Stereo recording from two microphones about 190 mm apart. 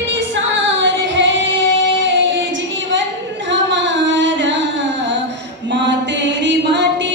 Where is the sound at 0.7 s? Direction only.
75° right (ahead or behind).